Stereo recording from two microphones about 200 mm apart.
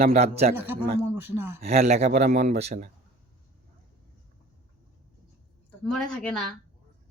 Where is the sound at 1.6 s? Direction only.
30° right (ahead or behind).